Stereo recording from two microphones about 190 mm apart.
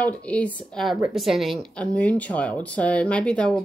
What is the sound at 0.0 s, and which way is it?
Speech, 5° left (ahead or behind).